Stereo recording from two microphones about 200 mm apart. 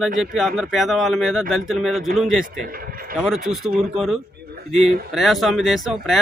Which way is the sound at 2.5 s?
45° right (ahead or behind).